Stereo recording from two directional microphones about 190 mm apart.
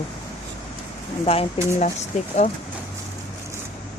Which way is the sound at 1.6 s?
30° left (ahead or behind).